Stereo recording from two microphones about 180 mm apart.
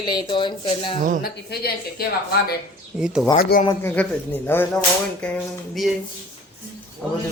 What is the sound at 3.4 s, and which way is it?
Speech, 55° left (ahead or behind).